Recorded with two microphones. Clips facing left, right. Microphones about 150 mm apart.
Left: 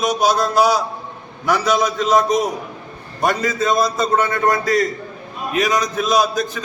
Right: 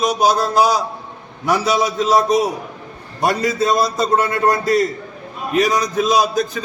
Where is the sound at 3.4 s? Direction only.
35° right (ahead or behind).